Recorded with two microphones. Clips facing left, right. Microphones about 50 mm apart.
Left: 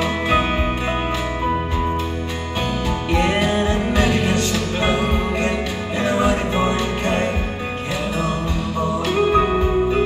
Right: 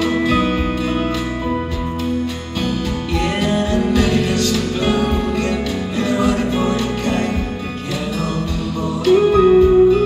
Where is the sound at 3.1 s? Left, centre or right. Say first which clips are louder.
Left 1 dB; left.